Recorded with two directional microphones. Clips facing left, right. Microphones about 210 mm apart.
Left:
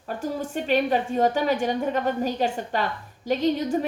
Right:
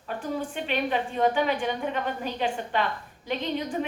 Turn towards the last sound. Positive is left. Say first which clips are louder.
# left 6 dB
turn(degrees=40)  # may be behind; listen again after turning